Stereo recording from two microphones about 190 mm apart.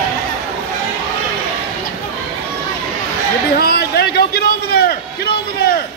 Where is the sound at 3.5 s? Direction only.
55° left (ahead or behind).